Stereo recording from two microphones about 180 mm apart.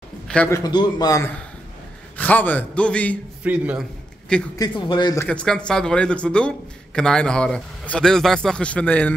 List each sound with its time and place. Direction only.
0.3 s a man's voice: 5° left (ahead or behind)
0.7 s a man's voice: 25° left (ahead or behind); by 3.2 s 5° left (ahead or behind)
3.4 s a man's voice: 5° right (ahead or behind)
4.6 s a man's voice: 25° left (ahead or behind)
5.2 s speech: 5° left (ahead or behind)